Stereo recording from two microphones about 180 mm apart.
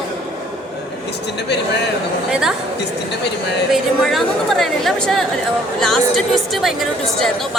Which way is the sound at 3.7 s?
Centre (ahead or behind).